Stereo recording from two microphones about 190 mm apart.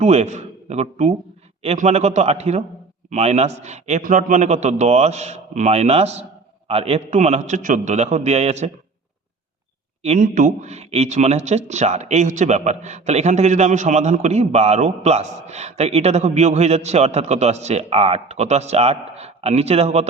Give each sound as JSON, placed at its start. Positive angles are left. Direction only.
{"t": 0.0, "sound": "a man's voice", "side_deg": -35}
{"t": 10.0, "sound": "speech", "side_deg": -40}